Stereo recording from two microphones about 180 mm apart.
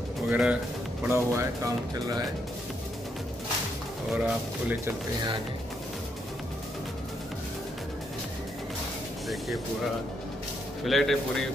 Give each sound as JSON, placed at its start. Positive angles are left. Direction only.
{"t": 0.3, "sound": "speech", "side_deg": -5}
{"t": 4.1, "sound": "speech", "side_deg": -10}
{"t": 10.8, "sound": "speech", "side_deg": 0}